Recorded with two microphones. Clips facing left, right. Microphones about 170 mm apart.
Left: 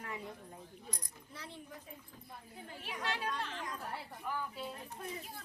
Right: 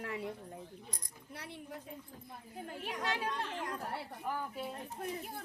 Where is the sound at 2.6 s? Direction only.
50° right (ahead or behind).